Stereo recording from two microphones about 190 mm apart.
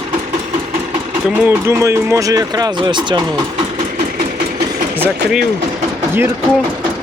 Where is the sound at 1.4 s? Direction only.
15° right (ahead or behind).